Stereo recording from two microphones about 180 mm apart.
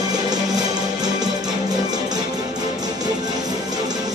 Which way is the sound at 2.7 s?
20° right (ahead or behind).